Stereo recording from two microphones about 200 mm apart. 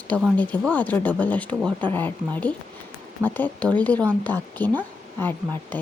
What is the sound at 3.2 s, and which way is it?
A woman's voice, 10° left (ahead or behind).